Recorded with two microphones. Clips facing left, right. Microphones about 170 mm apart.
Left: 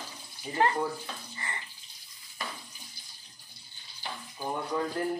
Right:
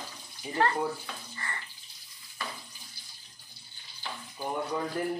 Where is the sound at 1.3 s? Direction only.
20° left (ahead or behind).